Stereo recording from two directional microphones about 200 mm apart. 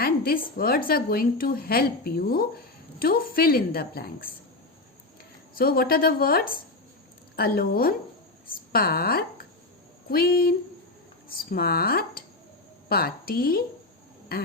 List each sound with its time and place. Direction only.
0.0 s a woman's voice: 50° left (ahead or behind)
5.5 s a woman's voice: 45° left (ahead or behind)